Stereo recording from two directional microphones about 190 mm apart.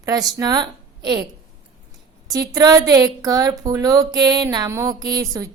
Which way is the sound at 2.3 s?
20° right (ahead or behind).